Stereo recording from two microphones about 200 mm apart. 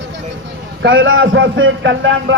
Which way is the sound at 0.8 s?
75° right (ahead or behind).